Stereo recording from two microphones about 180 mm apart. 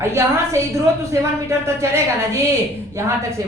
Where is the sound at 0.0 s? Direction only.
15° right (ahead or behind).